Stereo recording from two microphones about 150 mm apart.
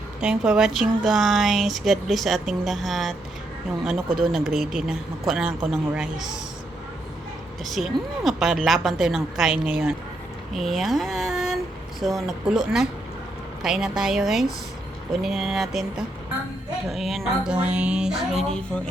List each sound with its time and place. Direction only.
0.2 s speech: 5° right (ahead or behind)
4.2 s speech: centre (ahead or behind)
7.6 s speech: centre (ahead or behind)